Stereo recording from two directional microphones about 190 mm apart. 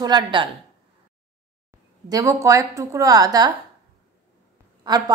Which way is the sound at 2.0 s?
15° right (ahead or behind).